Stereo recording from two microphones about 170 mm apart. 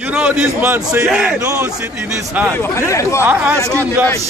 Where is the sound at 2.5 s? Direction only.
15° left (ahead or behind).